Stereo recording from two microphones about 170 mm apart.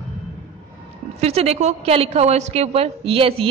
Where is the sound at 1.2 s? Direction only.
35° right (ahead or behind).